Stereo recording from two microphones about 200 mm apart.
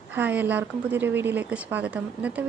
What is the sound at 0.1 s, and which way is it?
A woman's voice, 10° right (ahead or behind).